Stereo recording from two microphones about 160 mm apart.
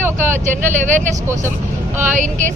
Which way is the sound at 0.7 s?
50° right (ahead or behind).